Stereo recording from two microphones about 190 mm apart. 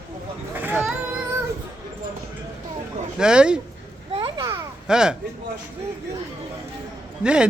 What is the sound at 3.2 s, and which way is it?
Speech, 5° right (ahead or behind).